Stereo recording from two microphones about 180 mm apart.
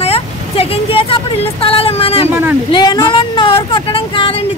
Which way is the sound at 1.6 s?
30° left (ahead or behind).